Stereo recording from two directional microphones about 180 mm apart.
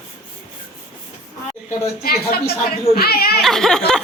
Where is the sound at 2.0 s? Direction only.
60° left (ahead or behind).